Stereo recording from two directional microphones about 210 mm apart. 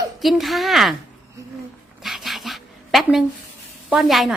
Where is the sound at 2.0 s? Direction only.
Centre (ahead or behind).